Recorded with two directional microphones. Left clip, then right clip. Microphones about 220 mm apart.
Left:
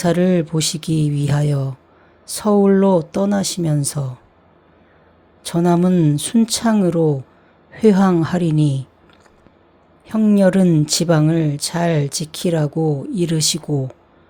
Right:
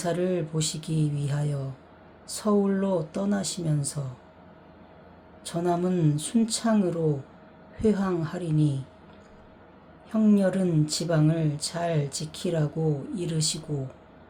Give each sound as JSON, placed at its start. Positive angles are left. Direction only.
{"t": 0.0, "sound": "speech", "side_deg": 40}
{"t": 5.4, "sound": "speech", "side_deg": 40}
{"t": 10.1, "sound": "speech", "side_deg": 35}